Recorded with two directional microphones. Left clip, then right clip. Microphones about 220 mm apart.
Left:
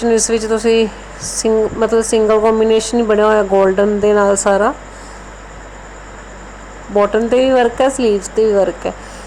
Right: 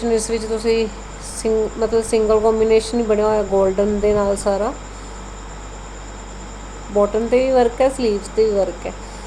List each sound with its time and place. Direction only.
0.0 s speech: 20° left (ahead or behind)
6.9 s speech: 25° left (ahead or behind)